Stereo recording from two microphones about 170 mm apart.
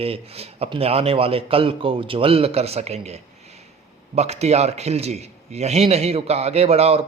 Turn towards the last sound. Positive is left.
turn(degrees=-35)  # may be behind; listen again after turning